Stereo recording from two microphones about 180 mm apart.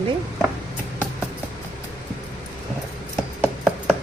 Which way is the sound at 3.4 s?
5° right (ahead or behind).